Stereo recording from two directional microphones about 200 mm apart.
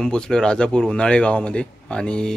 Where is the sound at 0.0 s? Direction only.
5° left (ahead or behind).